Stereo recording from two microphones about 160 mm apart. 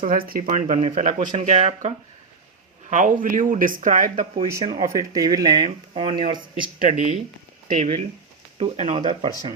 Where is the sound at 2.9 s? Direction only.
55° right (ahead or behind).